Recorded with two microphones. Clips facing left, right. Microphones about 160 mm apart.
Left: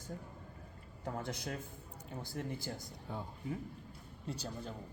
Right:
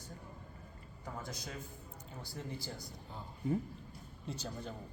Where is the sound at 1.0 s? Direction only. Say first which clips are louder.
Left 4 dB; 60° left (ahead or behind).